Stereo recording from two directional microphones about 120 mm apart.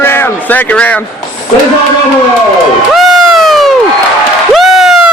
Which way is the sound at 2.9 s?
Centre (ahead or behind).